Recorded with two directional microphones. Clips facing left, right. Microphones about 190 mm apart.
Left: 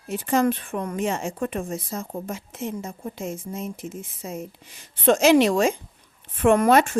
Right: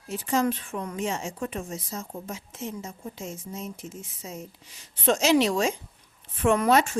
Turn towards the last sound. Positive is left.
turn(degrees=55)  # may be behind; listen again after turning